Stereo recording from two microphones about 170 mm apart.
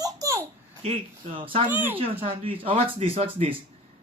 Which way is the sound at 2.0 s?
35° right (ahead or behind).